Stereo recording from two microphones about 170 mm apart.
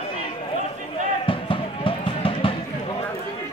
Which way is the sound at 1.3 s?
30° left (ahead or behind).